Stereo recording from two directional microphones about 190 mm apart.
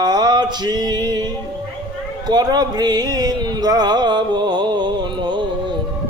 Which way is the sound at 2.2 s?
20° right (ahead or behind).